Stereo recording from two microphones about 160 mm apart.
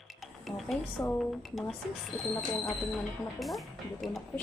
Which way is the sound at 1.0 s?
15° left (ahead or behind).